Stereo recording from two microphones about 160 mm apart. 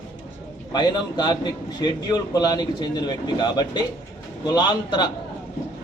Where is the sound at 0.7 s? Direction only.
25° left (ahead or behind).